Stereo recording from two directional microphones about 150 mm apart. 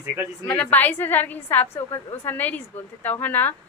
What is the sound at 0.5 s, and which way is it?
A woman's voice, 10° left (ahead or behind).